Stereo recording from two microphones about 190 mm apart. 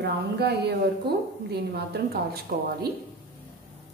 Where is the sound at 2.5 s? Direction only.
50° right (ahead or behind).